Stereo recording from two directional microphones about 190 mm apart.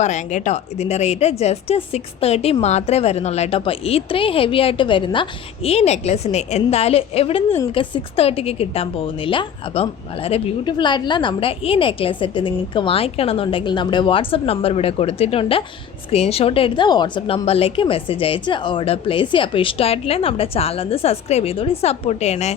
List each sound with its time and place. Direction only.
0.0 s a woman's voice: 40° left (ahead or behind)